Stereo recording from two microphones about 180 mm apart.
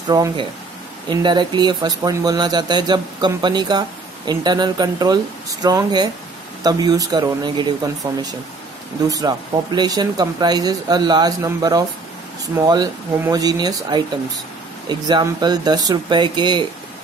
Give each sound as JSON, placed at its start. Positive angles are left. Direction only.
{"t": 0.1, "sound": "speech", "side_deg": -20}